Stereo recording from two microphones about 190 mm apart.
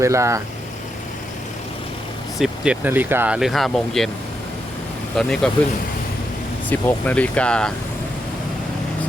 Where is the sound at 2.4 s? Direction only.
5° right (ahead or behind).